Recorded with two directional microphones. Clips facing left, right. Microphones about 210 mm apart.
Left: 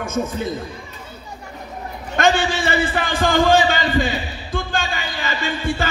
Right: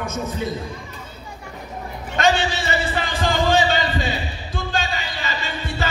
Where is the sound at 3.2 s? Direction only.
50° left (ahead or behind).